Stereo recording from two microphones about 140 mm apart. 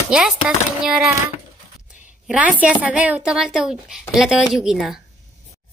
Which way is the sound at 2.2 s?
10° right (ahead or behind).